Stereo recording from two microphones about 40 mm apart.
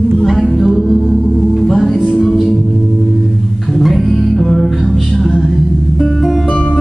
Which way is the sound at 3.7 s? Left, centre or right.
Centre.